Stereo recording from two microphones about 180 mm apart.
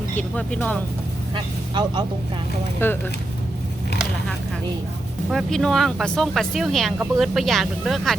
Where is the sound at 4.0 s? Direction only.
5° left (ahead or behind).